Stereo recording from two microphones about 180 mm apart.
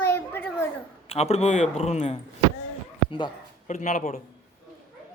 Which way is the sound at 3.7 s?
45° left (ahead or behind).